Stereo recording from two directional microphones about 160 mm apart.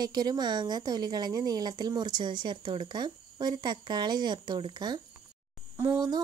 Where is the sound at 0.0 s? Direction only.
25° right (ahead or behind).